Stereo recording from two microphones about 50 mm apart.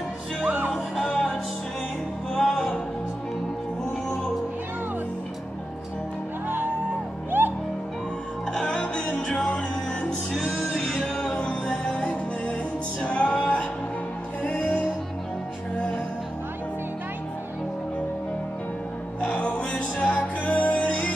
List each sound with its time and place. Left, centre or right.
0.7 s music: centre
7.2 s music: right
8.5 s music: centre
13.0 s music: left
19.2 s music: left